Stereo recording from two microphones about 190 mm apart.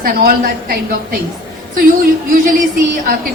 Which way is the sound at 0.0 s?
50° right (ahead or behind).